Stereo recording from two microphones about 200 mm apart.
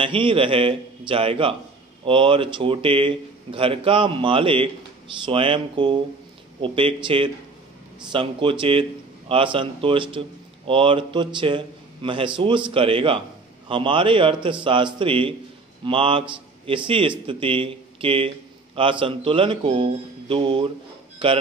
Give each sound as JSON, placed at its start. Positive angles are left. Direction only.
{"t": 0.0, "sound": "a man's voice", "side_deg": -25}